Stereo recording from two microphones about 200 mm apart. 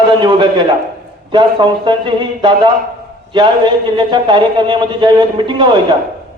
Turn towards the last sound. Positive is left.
turn(degrees=-25)  # may be behind; listen again after turning